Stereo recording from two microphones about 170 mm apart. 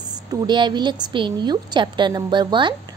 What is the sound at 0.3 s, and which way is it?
A woman's voice, 25° right (ahead or behind).